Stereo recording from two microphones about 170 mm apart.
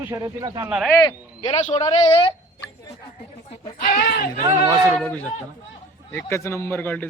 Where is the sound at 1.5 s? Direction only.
35° left (ahead or behind).